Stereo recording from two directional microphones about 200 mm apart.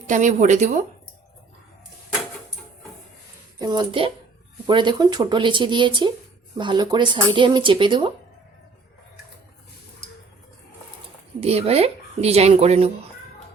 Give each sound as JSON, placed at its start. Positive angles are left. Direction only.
{"t": 0.1, "sound": "speech", "side_deg": -40}
{"t": 3.6, "sound": "speech", "side_deg": -20}
{"t": 11.3, "sound": "speech", "side_deg": -30}